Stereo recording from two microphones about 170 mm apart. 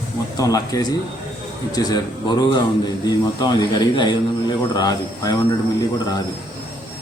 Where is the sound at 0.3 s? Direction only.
20° left (ahead or behind).